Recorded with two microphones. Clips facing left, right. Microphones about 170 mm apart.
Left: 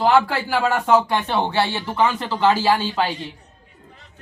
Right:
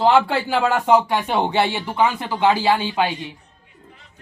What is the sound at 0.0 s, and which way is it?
Speech, 25° right (ahead or behind).